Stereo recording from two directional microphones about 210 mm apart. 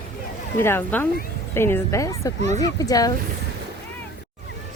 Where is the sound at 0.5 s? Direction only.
10° left (ahead or behind).